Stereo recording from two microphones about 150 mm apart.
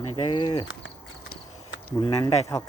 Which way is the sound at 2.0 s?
30° left (ahead or behind).